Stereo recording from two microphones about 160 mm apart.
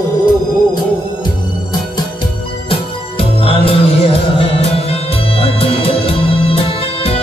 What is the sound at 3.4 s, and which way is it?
Music, 35° left (ahead or behind).